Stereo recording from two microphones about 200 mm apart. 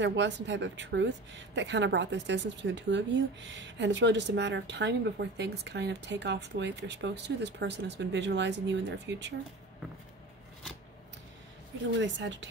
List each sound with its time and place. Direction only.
0.0 s a woman's voice: 60° right (ahead or behind)
11.9 s a woman's voice: 60° right (ahead or behind)